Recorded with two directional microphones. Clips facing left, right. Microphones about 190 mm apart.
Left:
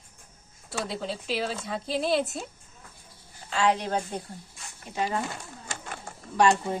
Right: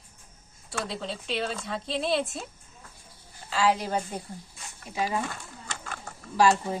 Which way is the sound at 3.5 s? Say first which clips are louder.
Even; 5° right (ahead or behind).